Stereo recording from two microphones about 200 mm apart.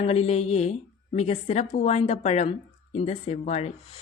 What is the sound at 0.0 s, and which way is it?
Speech, 30° left (ahead or behind).